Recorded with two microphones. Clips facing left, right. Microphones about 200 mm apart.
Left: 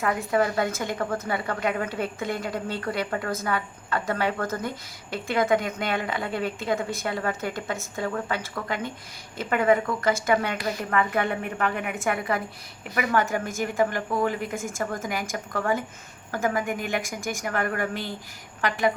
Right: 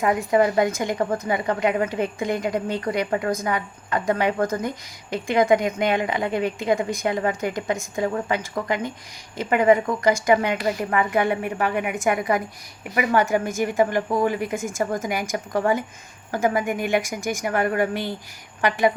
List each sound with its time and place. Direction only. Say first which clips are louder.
0.0 s a woman's voice: right 5 dB; 15° right (ahead or behind)